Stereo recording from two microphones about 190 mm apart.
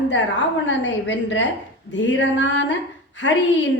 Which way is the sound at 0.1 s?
70° left (ahead or behind).